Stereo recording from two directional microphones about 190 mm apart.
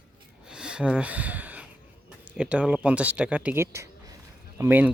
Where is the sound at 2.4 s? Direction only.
5° right (ahead or behind).